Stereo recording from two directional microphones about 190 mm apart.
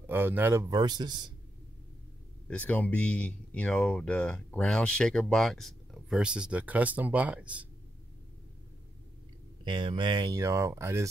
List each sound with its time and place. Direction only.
0.0 s speech: 10° right (ahead or behind)
2.4 s speech: 10° left (ahead or behind)
9.7 s speech: 25° right (ahead or behind)